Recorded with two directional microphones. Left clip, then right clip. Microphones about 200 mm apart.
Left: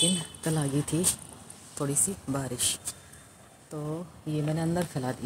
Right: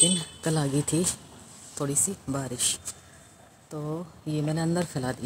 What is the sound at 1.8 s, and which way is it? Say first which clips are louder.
Speech: right 2 dB; 10° right (ahead or behind).